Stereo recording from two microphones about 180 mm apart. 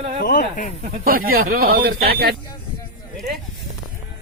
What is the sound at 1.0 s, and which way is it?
Speech, 55° right (ahead or behind).